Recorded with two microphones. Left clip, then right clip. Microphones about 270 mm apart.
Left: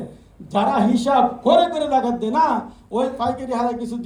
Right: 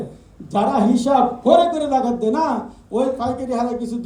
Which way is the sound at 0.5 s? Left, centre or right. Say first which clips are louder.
Right 1 dB; centre.